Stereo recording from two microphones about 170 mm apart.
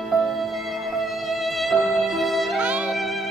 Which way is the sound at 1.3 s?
Centre (ahead or behind).